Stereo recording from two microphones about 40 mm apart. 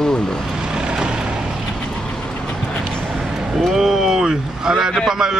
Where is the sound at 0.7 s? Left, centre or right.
Centre.